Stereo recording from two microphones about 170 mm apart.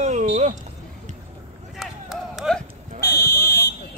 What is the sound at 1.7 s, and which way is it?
Chop, centre (ahead or behind).